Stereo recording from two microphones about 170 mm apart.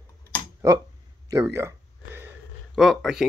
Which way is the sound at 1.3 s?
15° right (ahead or behind).